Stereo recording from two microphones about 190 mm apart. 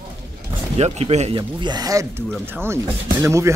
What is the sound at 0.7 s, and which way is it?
Speech, 35° right (ahead or behind).